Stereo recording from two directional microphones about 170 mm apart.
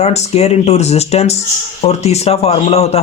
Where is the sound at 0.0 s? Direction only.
40° left (ahead or behind).